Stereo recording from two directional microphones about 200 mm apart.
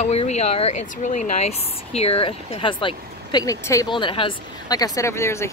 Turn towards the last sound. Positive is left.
turn(degrees=15)  # may be behind; listen again after turning